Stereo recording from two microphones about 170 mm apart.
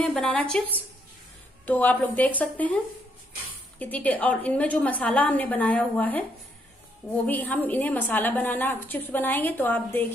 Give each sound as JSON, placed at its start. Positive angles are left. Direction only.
{"t": 0.0, "sound": "a woman's voice", "side_deg": 0}
{"t": 3.8, "sound": "a woman's voice", "side_deg": 10}